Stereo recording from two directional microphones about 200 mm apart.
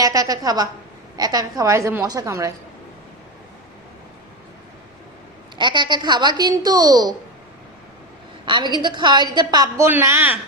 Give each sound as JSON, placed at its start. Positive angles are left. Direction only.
{"t": 0.0, "sound": "a woman's voice", "side_deg": -20}
{"t": 5.5, "sound": "a woman's voice", "side_deg": -20}
{"t": 8.4, "sound": "a woman's voice", "side_deg": -20}